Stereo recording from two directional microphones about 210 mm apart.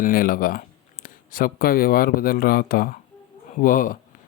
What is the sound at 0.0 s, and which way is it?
Speech, 40° left (ahead or behind).